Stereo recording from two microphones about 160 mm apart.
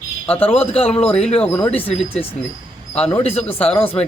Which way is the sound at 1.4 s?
10° left (ahead or behind).